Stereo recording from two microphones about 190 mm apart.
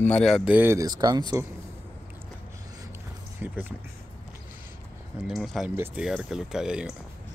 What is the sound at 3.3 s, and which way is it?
Speech, 10° right (ahead or behind).